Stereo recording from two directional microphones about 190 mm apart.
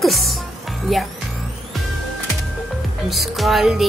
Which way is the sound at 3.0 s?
Centre (ahead or behind).